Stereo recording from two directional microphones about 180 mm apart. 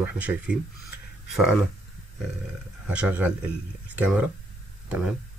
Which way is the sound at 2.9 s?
10° right (ahead or behind).